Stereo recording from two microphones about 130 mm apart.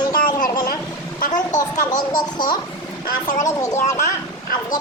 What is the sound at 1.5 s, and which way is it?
Speech, 70° left (ahead or behind).